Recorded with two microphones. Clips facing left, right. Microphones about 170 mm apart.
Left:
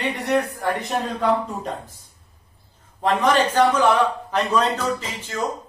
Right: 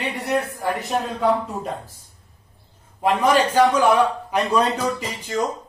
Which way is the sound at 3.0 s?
10° right (ahead or behind).